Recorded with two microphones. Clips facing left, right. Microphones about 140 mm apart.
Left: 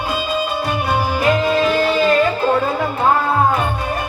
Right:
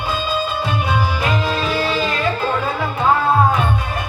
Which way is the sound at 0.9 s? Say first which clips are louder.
Left 6 dB; 50° left (ahead or behind).